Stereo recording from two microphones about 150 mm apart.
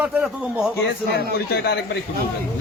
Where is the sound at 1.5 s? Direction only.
90° left.